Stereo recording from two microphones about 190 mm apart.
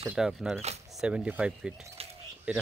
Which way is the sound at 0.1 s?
5° right (ahead or behind).